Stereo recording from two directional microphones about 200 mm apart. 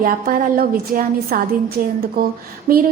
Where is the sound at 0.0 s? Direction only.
45° right (ahead or behind).